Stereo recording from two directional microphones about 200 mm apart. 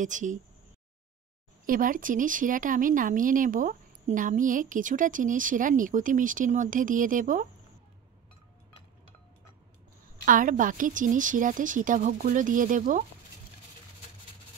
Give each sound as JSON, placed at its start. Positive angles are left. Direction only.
{"t": 0.0, "sound": "speech", "side_deg": -40}
{"t": 1.7, "sound": "speech", "side_deg": -45}
{"t": 10.2, "sound": "speech", "side_deg": -40}